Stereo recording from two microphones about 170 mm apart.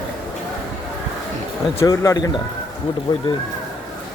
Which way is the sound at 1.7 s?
20° left (ahead or behind).